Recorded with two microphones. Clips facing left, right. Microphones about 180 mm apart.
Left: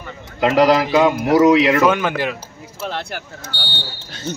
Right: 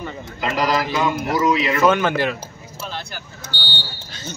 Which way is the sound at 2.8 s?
75° left (ahead or behind).